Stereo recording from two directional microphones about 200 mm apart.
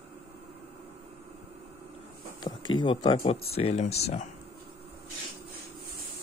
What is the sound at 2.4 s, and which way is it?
Speech, 25° left (ahead or behind).